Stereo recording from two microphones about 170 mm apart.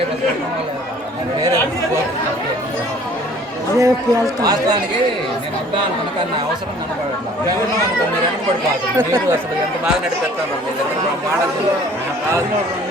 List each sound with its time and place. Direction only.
3.8 s a man's voice: 20° right (ahead or behind)
9.0 s speech: 15° right (ahead or behind)